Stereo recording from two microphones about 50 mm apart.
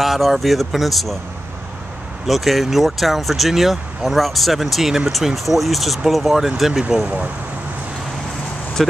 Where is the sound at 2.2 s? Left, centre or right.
Centre.